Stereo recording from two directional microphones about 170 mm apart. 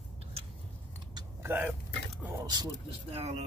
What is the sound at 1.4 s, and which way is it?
Speech, 10° right (ahead or behind).